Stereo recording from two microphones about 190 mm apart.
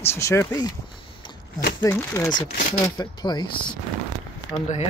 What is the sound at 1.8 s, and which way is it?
Speech, 15° left (ahead or behind).